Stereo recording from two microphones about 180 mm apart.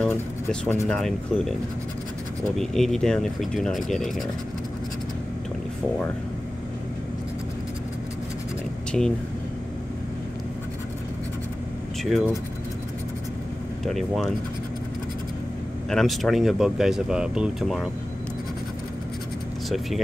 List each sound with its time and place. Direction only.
0.0 s speech: 10° left (ahead or behind)
2.5 s speech: centre (ahead or behind)
8.9 s speech: centre (ahead or behind)
12.0 s speech: centre (ahead or behind)
13.8 s speech: centre (ahead or behind)
15.9 s speech: centre (ahead or behind)